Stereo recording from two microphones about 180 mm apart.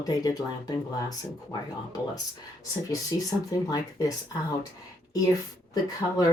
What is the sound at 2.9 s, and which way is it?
Speech, 20° left (ahead or behind).